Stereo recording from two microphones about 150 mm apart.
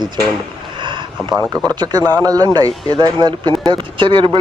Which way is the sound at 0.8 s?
35° right (ahead or behind).